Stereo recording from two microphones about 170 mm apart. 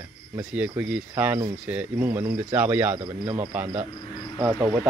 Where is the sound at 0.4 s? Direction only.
5° right (ahead or behind).